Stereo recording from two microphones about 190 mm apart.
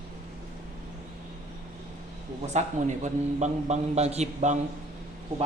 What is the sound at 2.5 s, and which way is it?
A man's voice, 35° right (ahead or behind).